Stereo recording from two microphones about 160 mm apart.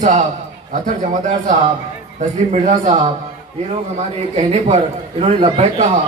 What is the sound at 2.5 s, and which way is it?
Speech, 50° right (ahead or behind).